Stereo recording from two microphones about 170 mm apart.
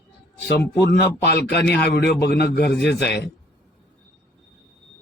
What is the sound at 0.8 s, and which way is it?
A man's voice, 85° left.